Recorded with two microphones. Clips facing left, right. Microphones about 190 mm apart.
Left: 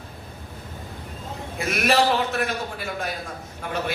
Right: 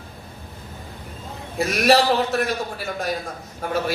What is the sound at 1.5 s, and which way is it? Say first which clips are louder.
Speech: right 4 dB; 35° right (ahead or behind).